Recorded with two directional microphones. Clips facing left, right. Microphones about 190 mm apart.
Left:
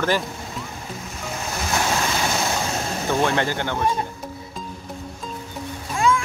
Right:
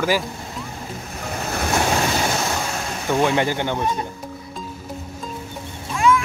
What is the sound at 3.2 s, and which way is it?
Speech, 15° right (ahead or behind).